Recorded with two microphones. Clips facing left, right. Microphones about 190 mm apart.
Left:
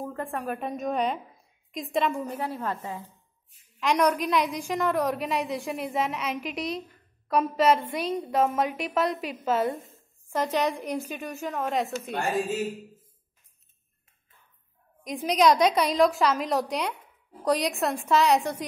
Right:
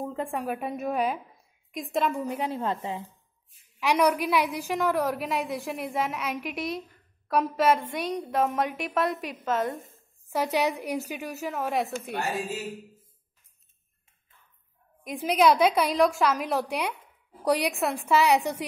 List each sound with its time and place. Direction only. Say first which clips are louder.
0.0 s a woman's voice: right 1 dB; 15° right (ahead or behind)
2.1 s a woman's voice: right 2 dB; 15° right (ahead or behind)
3.8 s a woman's voice: even; 10° right (ahead or behind)
10.3 s a woman's voice: even; 10° right (ahead or behind)
15.0 s a woman's voice: even; 5° right (ahead or behind)